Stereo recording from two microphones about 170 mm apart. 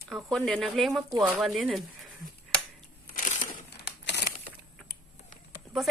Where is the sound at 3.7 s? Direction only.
80° left.